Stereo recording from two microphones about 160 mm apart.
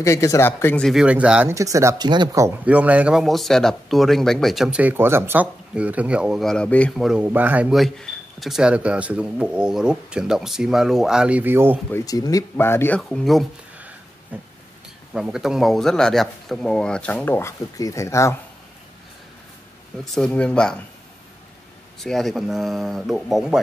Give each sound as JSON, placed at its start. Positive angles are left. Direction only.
{"t": 0.0, "sound": "speech", "side_deg": 20}
{"t": 0.8, "sound": "speech", "side_deg": -5}
{"t": 1.5, "sound": "speech", "side_deg": -20}
{"t": 2.6, "sound": "speech", "side_deg": -10}
{"t": 11.9, "sound": "speech", "side_deg": 20}
{"t": 20.2, "sound": "speech", "side_deg": 5}
{"t": 22.0, "sound": "speech", "side_deg": 0}